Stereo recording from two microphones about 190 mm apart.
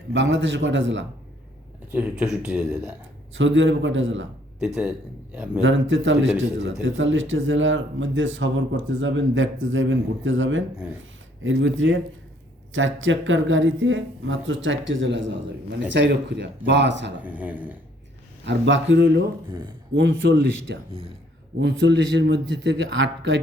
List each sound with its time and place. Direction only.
0.1 s a man's voice: 70° right (ahead or behind)
1.9 s speech: 5° right (ahead or behind)
3.3 s speech: 75° right (ahead or behind)
4.6 s speech: 5° right (ahead or behind)
5.6 s a man's voice: 85° right; by 17.1 s 65° right (ahead or behind)
17.2 s speech: 10° right (ahead or behind)
18.4 s a man's voice: 75° right (ahead or behind)
19.5 s speech: 25° right (ahead or behind)
19.9 s a man's voice: 70° right (ahead or behind)